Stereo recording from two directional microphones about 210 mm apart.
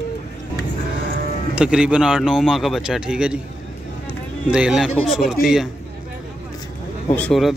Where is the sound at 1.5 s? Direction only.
5° right (ahead or behind).